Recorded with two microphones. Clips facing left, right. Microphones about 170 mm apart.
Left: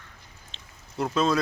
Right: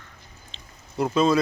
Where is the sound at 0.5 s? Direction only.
Centre (ahead or behind).